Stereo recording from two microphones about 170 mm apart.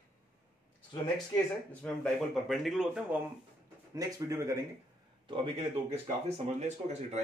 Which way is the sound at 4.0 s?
20° right (ahead or behind).